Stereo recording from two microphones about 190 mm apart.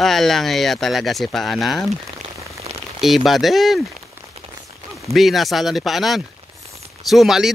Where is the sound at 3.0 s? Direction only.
Centre (ahead or behind).